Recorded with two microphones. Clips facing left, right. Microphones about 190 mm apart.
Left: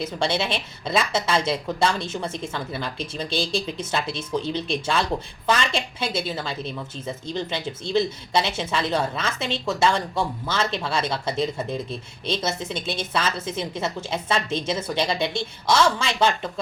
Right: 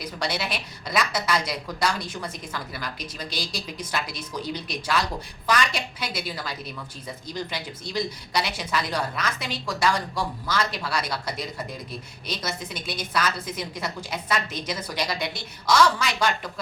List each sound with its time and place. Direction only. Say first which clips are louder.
0.0 s a woman's voice: left 5 dB; 25° left (ahead or behind)